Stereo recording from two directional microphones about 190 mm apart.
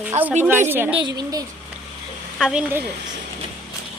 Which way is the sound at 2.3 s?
5° right (ahead or behind).